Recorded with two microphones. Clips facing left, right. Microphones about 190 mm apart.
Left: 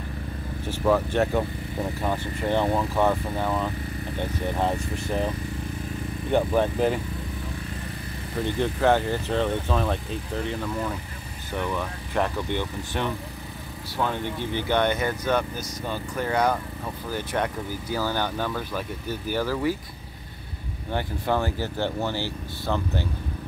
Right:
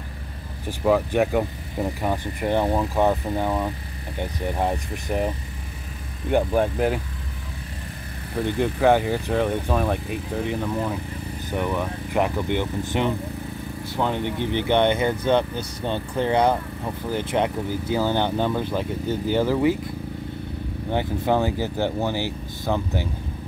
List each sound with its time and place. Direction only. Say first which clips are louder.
0.7 s speech: right 2 dB; 15° right (ahead or behind)
6.3 s speech: right 1 dB; 10° right (ahead or behind)
8.5 s speech: right 3 dB; 10° right (ahead or behind)
20.9 s speech: right 4 dB; 15° right (ahead or behind)